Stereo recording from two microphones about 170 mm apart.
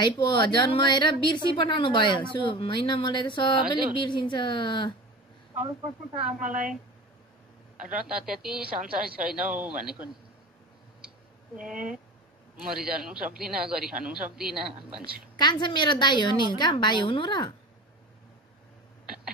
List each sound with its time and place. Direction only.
0.0 s a woman's voice: 25° left (ahead or behind)
6.4 s a woman's voice: 50° right (ahead or behind)
8.1 s a woman's voice: 5° right (ahead or behind)
11.5 s speech: 5° right (ahead or behind)
12.9 s speech: 5° right (ahead or behind)
15.3 s a woman's voice: 25° left (ahead or behind)